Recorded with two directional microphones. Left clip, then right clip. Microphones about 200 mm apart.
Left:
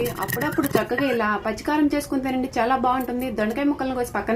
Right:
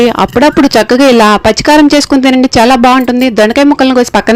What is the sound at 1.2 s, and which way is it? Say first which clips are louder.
Speech: right 18 dB; 45° right (ahead or behind).